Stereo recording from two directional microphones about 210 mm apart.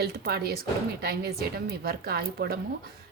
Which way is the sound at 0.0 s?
50° right (ahead or behind).